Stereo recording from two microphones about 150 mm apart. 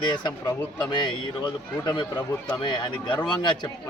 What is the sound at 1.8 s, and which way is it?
A man's voice, 25° left (ahead or behind).